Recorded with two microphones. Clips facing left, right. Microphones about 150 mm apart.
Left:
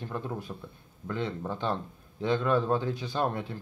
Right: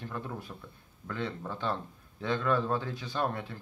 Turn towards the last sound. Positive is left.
turn(degrees=25)  # may be behind; listen again after turning